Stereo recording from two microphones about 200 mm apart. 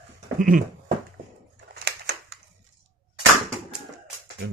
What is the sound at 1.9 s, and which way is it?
Crushing, 60° right (ahead or behind).